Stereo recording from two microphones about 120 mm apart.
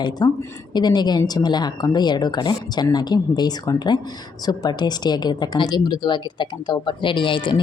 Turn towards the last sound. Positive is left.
turn(degrees=40)  # may be behind; listen again after turning